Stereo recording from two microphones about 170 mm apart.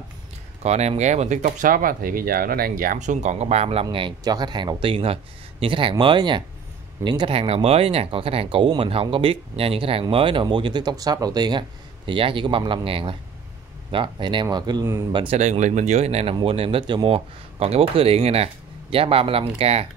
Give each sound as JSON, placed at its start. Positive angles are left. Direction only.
{"t": 0.6, "sound": "speech", "side_deg": -40}
{"t": 3.8, "sound": "speech", "side_deg": -25}
{"t": 15.2, "sound": "speech", "side_deg": -40}